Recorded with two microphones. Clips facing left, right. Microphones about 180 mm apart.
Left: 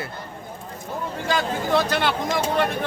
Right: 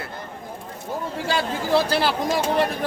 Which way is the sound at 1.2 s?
30° right (ahead or behind).